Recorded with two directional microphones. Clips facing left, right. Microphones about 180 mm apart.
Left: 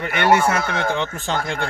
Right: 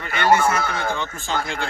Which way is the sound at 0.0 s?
65° left (ahead or behind).